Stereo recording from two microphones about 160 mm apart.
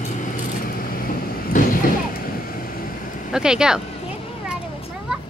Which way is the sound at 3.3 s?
5° right (ahead or behind).